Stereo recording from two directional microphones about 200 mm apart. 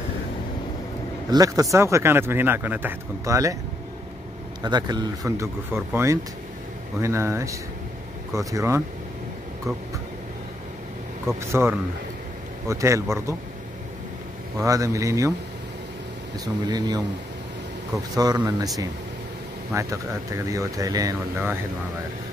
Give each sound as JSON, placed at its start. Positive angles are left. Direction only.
{"t": 1.3, "sound": "speech", "side_deg": -15}
{"t": 4.6, "sound": "speech", "side_deg": -20}
{"t": 11.3, "sound": "speech", "side_deg": -15}
{"t": 12.6, "sound": "speech", "side_deg": -15}
{"t": 14.6, "sound": "speech", "side_deg": -15}
{"t": 16.3, "sound": "speech", "side_deg": -20}
{"t": 18.1, "sound": "speech", "side_deg": -20}
{"t": 19.7, "sound": "speech", "side_deg": -15}